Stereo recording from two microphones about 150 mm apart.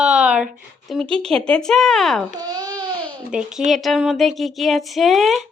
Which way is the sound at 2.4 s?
25° right (ahead or behind).